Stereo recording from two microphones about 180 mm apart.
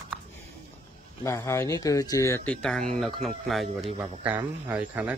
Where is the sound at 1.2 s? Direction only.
15° left (ahead or behind); by 3.6 s centre (ahead or behind).